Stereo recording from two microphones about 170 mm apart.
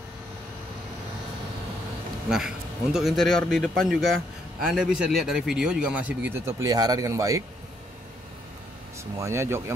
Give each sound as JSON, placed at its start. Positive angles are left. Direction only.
{"t": 2.2, "sound": "a man's voice", "side_deg": -5}
{"t": 9.1, "sound": "a man's voice", "side_deg": -15}